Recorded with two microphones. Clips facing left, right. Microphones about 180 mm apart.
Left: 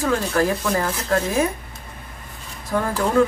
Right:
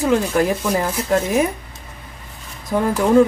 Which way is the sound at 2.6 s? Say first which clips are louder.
Right 4 dB; 20° right (ahead or behind).